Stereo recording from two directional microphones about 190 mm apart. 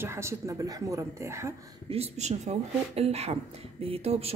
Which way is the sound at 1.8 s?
30° right (ahead or behind).